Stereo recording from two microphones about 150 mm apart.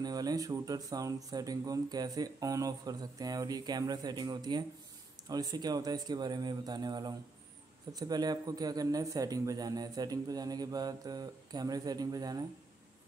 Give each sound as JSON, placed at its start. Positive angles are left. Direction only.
{"t": 0.0, "sound": "speech", "side_deg": -25}